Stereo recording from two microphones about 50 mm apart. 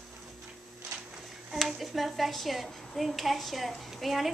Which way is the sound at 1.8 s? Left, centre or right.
Centre.